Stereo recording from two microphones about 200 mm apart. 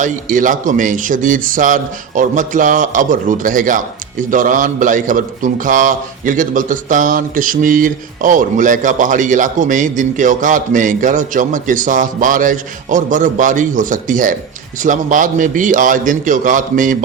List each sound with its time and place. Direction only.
0.0 s a man's voice: 40° right (ahead or behind)